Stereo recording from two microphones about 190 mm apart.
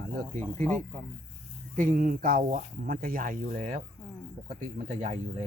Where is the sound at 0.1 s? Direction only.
45° right (ahead or behind).